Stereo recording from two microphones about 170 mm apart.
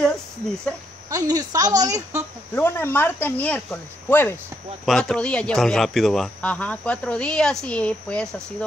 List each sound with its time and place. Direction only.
1.1 s a woman's voice: 20° right (ahead or behind)
2.5 s speech: 10° left (ahead or behind)
4.8 s a man's voice: centre (ahead or behind)